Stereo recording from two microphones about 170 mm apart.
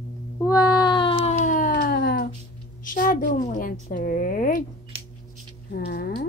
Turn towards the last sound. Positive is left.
turn(degrees=65)  # may be behind; listen again after turning